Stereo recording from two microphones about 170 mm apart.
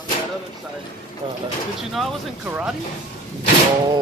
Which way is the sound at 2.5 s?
10° right (ahead or behind).